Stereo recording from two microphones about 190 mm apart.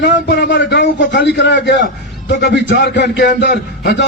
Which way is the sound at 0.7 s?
70° left (ahead or behind).